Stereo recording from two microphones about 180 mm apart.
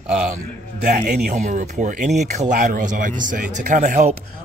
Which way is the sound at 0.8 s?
45° right (ahead or behind).